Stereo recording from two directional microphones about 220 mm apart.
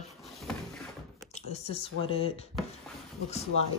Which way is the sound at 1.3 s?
25° left (ahead or behind).